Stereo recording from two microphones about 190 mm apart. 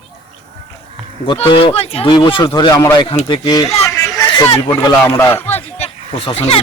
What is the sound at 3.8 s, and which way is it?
Hubbub, 15° left (ahead or behind).